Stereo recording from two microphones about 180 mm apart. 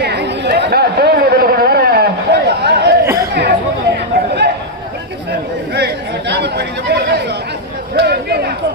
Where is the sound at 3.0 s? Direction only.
15° right (ahead or behind).